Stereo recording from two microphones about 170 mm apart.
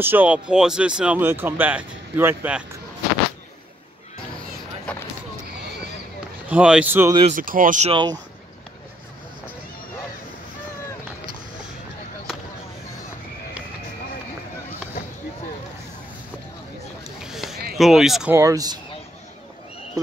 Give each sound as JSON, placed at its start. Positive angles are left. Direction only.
{"t": 0.0, "sound": "speech", "side_deg": -10}
{"t": 4.9, "sound": "a sound", "side_deg": 5}
{"t": 6.5, "sound": "speech", "side_deg": -5}
{"t": 7.3, "sound": "speech", "side_deg": -55}
{"t": 7.9, "sound": "speech", "side_deg": -25}
{"t": 17.2, "sound": "a sound", "side_deg": 0}
{"t": 17.7, "sound": "speech", "side_deg": 0}
{"t": 18.3, "sound": "speech", "side_deg": -20}